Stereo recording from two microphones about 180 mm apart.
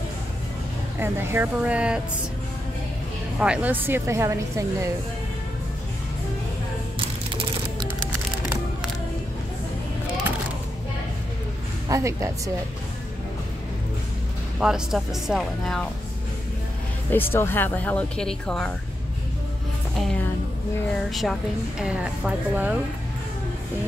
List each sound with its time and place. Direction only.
0.9 s a woman's voice: 10° right (ahead or behind)
3.3 s a woman's voice: 5° right (ahead or behind)
7.0 s typing: 30° right (ahead or behind)
11.9 s a woman's voice: 15° right (ahead or behind)
14.6 s a woman's voice: centre (ahead or behind)
17.1 s speech: 10° left (ahead or behind)
21.1 s a woman's voice: centre (ahead or behind)